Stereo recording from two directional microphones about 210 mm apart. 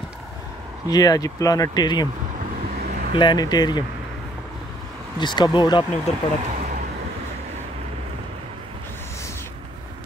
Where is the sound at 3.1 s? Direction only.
20° left (ahead or behind).